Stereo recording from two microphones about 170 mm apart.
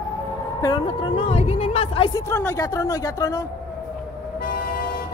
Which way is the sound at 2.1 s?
15° left (ahead or behind).